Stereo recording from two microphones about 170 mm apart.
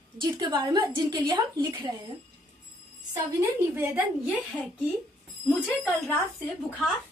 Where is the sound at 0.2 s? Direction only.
25° right (ahead or behind).